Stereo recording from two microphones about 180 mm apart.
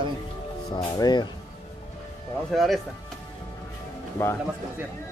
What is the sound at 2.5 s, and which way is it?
Speech, centre (ahead or behind).